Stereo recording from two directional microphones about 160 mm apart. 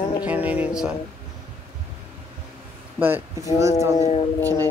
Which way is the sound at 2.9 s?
15° right (ahead or behind).